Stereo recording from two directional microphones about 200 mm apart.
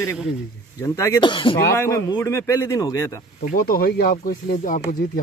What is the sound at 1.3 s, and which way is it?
Speech, 25° left (ahead or behind).